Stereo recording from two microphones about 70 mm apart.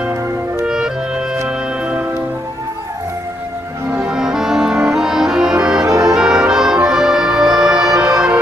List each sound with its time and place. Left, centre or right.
0.7 s music: centre
3.9 s music: centre
5.9 s brass instrument: centre
6.9 s music: centre